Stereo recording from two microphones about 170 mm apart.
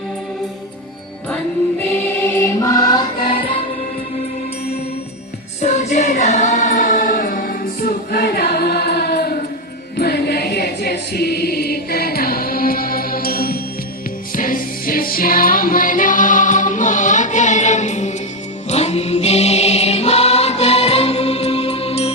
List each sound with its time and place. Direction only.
2.6 s music: 20° left (ahead or behind)
5.6 s choir: 45° left (ahead or behind); by 13.6 s 60° left (ahead or behind)
14.3 s music: 55° left (ahead or behind)
18.7 s mantra: 40° left (ahead or behind)